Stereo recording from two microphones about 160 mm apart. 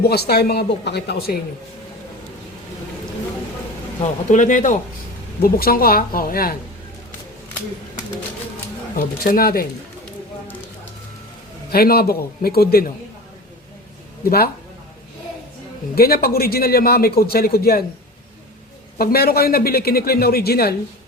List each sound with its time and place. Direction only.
0.0 s speech: 85° left
4.0 s speech: 50° left (ahead or behind)
5.4 s a man's voice: 70° left (ahead or behind)
9.0 s a man's voice: 65° left (ahead or behind)
11.7 s a man's voice: 70° left (ahead or behind)
14.3 s a man's voice: 70° left (ahead or behind)
16.0 s a man's voice: 75° left (ahead or behind)
18.9 s a man's voice: 70° left (ahead or behind)